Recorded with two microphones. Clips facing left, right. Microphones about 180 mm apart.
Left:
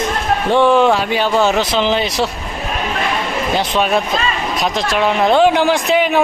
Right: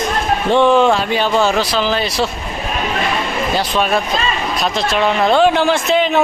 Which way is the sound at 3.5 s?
15° left (ahead or behind).